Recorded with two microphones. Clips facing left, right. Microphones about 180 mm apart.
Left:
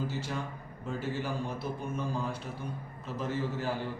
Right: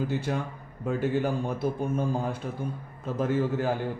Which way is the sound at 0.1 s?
55° right (ahead or behind).